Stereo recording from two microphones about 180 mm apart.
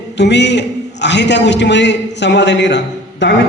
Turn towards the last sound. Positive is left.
turn(degrees=75)  # may be behind; listen again after turning